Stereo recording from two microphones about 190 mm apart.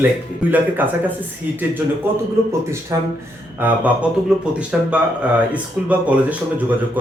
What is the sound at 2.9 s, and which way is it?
Speech, 15° right (ahead or behind).